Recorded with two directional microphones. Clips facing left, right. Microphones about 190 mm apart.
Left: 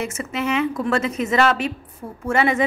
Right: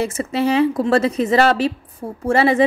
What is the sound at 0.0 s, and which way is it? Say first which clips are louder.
A woman's voice: right 6 dB; 35° right (ahead or behind).